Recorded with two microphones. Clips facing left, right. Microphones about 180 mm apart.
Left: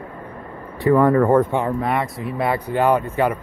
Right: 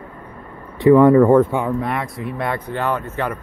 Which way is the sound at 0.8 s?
20° right (ahead or behind).